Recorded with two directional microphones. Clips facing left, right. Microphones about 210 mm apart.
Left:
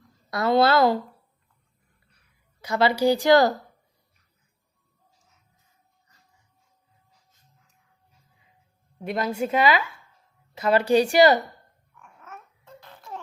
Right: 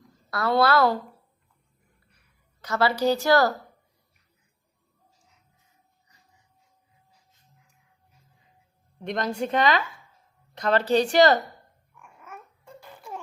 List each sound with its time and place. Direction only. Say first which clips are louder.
0.3 s a woman's voice: left 2 dB; 20° left (ahead or behind)
2.6 s a woman's voice: left 2 dB; 15° left (ahead or behind)
9.0 s a woman's voice: left 1 dB; 5° left (ahead or behind)
11.9 s dog: even; 10° right (ahead or behind)